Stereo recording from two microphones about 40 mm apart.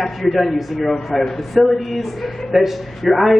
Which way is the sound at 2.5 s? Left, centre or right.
Centre.